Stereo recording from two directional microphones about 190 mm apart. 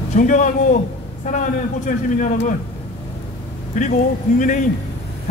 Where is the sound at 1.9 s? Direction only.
45° left (ahead or behind).